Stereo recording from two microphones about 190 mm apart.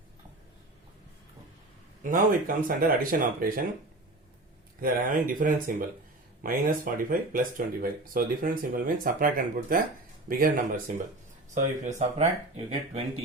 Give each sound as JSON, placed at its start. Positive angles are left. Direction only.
{"t": 2.0, "sound": "speech", "side_deg": -45}
{"t": 4.8, "sound": "speech", "side_deg": -45}